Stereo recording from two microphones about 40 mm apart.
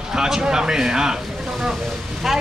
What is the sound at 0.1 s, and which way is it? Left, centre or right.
Speech, centre.